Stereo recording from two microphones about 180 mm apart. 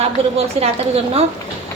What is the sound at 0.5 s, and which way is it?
Speech, 35° right (ahead or behind).